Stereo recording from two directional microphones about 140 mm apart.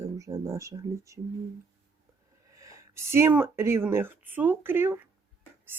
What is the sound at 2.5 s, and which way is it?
Speech, 25° right (ahead or behind).